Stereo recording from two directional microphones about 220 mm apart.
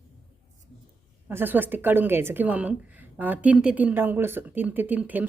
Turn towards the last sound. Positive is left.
turn(degrees=-5)  # may be behind; listen again after turning